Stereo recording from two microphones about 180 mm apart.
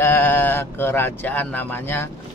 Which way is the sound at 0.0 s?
10° left (ahead or behind).